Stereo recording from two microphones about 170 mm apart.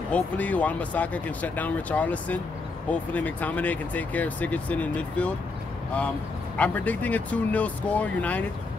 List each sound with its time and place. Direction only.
0.1 s speech: 10° left (ahead or behind)
6.5 s speech: 10° left (ahead or behind)